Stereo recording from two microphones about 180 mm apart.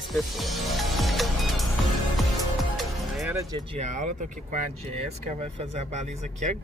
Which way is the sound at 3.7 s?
40° right (ahead or behind).